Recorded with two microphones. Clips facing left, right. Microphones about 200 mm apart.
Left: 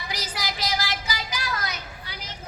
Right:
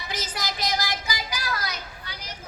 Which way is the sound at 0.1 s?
20° right (ahead or behind).